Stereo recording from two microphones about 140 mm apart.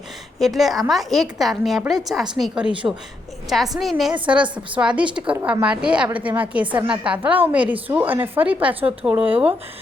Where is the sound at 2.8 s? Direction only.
20° right (ahead or behind).